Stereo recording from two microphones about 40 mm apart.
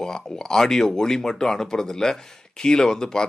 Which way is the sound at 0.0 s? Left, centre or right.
Centre.